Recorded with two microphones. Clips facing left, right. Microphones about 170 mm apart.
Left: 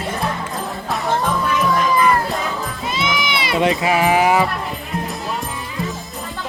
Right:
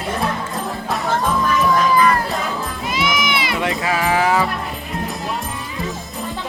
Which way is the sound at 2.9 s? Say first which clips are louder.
Right 2 dB; 25° left (ahead or behind).